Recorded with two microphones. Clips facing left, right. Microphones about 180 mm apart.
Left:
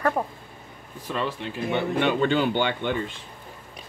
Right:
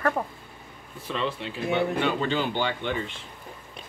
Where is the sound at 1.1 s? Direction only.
45° left (ahead or behind).